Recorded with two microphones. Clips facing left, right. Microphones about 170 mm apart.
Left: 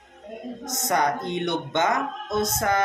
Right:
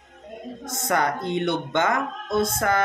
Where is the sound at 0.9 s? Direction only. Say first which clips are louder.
Even; 20° left (ahead or behind).